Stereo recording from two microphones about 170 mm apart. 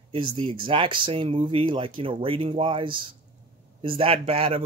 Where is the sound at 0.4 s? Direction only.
30° right (ahead or behind).